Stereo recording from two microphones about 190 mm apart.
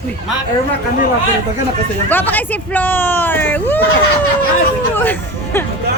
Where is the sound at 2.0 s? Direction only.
10° left (ahead or behind).